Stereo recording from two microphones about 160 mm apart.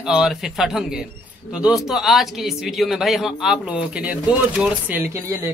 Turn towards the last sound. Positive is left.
turn(degrees=-15)  # may be behind; listen again after turning